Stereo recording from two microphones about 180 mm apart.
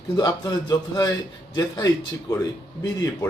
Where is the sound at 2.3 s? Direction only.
20° left (ahead or behind).